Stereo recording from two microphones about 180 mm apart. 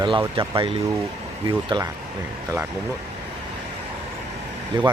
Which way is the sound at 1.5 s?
15° right (ahead or behind).